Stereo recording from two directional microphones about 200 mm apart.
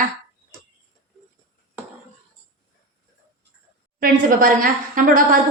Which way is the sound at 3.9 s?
45° right (ahead or behind).